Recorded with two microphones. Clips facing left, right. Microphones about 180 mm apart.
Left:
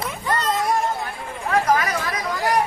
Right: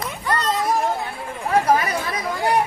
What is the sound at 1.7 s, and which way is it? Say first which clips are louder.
Chatter: right 1 dB; 30° right (ahead or behind).